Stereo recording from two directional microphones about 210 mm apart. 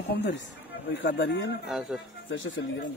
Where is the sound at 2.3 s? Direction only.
65° left (ahead or behind).